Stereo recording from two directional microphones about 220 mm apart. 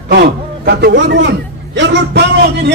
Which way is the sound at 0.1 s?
50° right (ahead or behind).